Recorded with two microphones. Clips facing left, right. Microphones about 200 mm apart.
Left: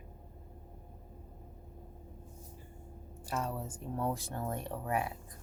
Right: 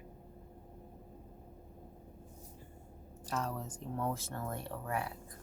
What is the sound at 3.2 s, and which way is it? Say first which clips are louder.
Speech: left 1 dB; 10° left (ahead or behind).